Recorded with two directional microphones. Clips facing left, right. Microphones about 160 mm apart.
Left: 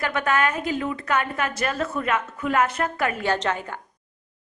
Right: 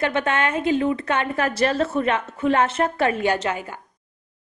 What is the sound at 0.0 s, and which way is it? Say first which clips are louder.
Speech: right 1 dB; 25° right (ahead or behind).